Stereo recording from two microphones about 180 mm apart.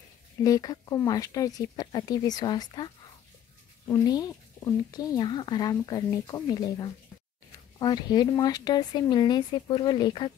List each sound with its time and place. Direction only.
0.4 s speech: 20° left (ahead or behind)